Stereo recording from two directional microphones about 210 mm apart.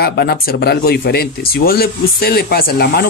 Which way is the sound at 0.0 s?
50° left (ahead or behind).